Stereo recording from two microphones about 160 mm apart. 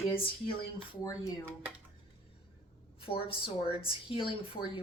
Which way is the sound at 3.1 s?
35° left (ahead or behind).